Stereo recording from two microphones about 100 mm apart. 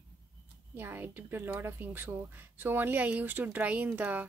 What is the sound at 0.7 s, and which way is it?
Speech, 20° right (ahead or behind).